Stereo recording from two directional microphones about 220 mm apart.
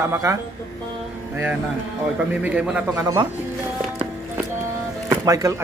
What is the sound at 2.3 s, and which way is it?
Speech, 5° right (ahead or behind).